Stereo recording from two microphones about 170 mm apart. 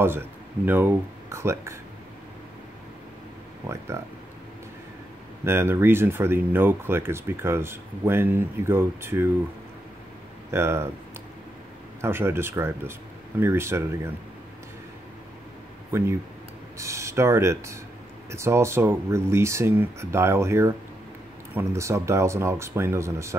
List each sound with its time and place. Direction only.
0.0 s speech: 15° right (ahead or behind)
3.6 s speech: 15° right (ahead or behind)
5.4 s speech: 15° right (ahead or behind)
10.5 s speech: 15° right (ahead or behind)
12.0 s speech: 15° right (ahead or behind)
15.9 s speech: 15° right (ahead or behind)